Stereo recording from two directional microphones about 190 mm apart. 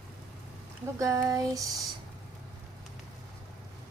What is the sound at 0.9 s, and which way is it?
Child singing, 15° right (ahead or behind).